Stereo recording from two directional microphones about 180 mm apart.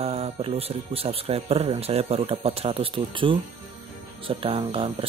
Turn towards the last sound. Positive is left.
turn(degrees=-30)  # may be behind; listen again after turning